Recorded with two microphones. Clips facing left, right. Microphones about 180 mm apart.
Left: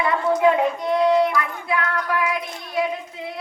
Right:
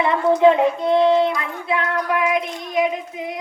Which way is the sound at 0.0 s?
25° right (ahead or behind).